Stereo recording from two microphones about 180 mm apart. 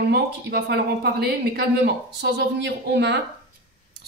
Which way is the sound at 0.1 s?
60° right (ahead or behind).